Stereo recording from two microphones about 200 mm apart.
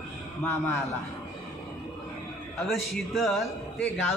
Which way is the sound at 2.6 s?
Centre (ahead or behind).